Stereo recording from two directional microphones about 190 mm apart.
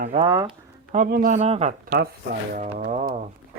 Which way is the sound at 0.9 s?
45° right (ahead or behind).